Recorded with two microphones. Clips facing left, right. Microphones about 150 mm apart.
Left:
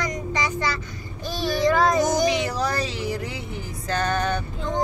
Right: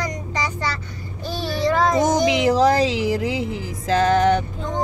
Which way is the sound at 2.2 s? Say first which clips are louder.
Right 7 dB; 90° right.